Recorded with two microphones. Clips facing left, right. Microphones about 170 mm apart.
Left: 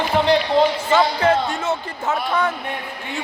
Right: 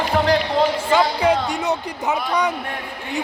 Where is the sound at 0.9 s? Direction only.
10° right (ahead or behind).